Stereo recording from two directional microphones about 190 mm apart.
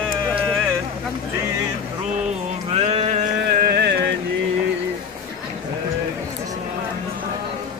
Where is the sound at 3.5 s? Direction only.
55° right (ahead or behind).